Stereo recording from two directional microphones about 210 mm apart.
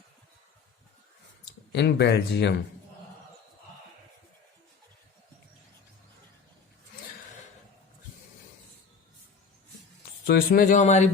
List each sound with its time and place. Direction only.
1.7 s speech: 55° left (ahead or behind)
10.2 s a man's voice: 45° left (ahead or behind)